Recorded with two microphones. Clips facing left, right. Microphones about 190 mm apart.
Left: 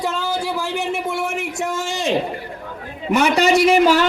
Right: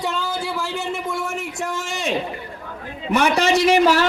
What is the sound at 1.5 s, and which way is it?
Speech, 25° left (ahead or behind).